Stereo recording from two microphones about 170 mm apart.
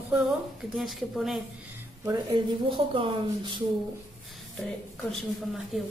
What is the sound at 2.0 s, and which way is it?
Speech, 20° right (ahead or behind).